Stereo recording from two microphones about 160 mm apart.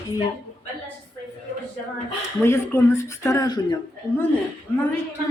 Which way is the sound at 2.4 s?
15° left (ahead or behind).